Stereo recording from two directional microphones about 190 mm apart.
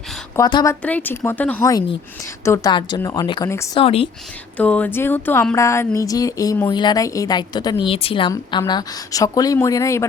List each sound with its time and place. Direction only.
0.3 s speech: 20° left (ahead or behind)
3.8 s speech: 30° left (ahead or behind)
4.5 s speech: 10° left (ahead or behind)